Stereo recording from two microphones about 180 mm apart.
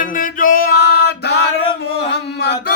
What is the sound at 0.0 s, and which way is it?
Music, 50° left (ahead or behind).